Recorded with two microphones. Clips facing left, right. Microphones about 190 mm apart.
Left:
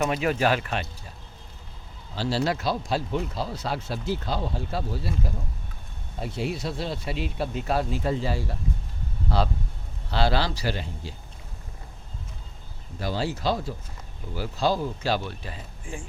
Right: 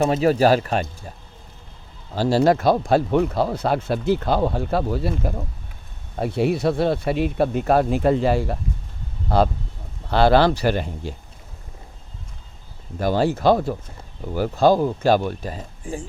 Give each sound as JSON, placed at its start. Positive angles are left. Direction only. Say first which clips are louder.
{"t": 0.0, "sound": "speech", "louder": "right 7 dB", "side_deg": -35}
{"t": 2.1, "sound": "speech", "louder": "right 9 dB", "side_deg": -45}
{"t": 9.3, "sound": "speech", "louder": "right 8 dB", "side_deg": -50}
{"t": 13.0, "sound": "speech", "louder": "right 9 dB", "side_deg": -50}